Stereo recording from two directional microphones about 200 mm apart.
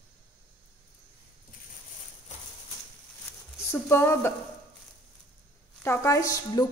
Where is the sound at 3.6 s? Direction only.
10° left (ahead or behind).